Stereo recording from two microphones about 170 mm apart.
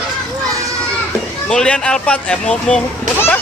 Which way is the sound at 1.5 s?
5° left (ahead or behind).